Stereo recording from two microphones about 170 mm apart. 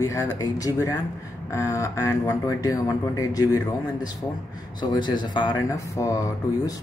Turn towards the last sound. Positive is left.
turn(degrees=20)  # may be behind; listen again after turning